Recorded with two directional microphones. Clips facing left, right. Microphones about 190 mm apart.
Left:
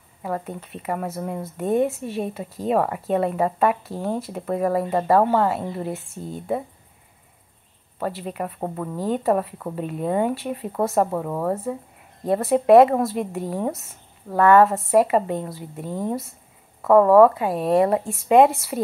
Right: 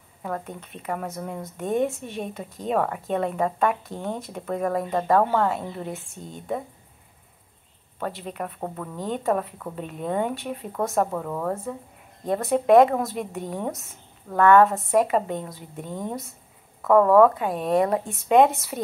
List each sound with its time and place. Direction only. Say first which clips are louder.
0.2 s speech: left 3 dB; 5° left (ahead or behind)
8.0 s speech: left 3 dB; 5° left (ahead or behind)